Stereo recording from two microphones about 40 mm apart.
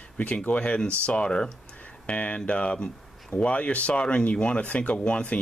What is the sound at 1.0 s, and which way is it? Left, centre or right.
Speech, left.